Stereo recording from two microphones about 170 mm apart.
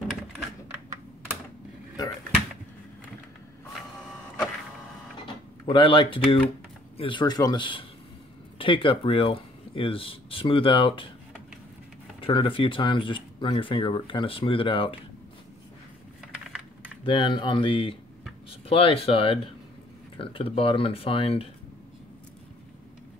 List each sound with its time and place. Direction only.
5.2 s speech: 30° left (ahead or behind)
12.2 s speech: 30° left (ahead or behind)
17.0 s speech: 30° left (ahead or behind)